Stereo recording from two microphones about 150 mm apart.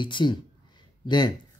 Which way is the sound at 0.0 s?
30° left (ahead or behind).